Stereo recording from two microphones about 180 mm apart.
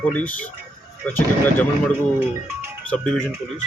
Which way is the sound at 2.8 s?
5° left (ahead or behind).